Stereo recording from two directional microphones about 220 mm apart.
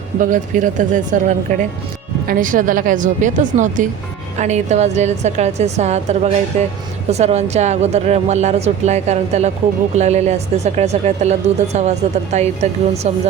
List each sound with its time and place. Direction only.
0.2 s speech: 35° right (ahead or behind)